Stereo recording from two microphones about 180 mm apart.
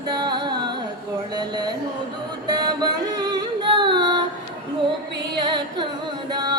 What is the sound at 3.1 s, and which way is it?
Yodeling, 25° right (ahead or behind).